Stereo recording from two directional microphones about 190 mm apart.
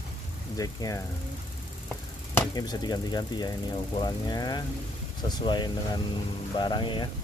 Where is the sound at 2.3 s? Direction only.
20° left (ahead or behind).